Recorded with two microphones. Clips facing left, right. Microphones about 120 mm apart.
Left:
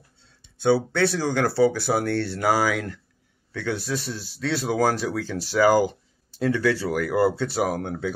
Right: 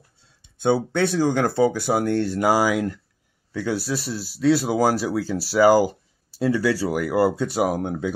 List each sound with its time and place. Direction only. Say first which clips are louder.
0.6 s speech: even; 20° right (ahead or behind)